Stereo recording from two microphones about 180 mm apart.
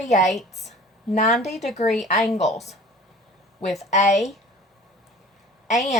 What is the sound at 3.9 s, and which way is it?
Speech, 40° left (ahead or behind).